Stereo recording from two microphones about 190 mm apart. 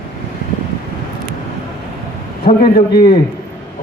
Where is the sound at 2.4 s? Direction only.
55° left (ahead or behind).